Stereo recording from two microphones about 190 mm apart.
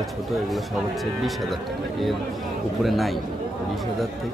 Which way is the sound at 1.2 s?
Centre (ahead or behind).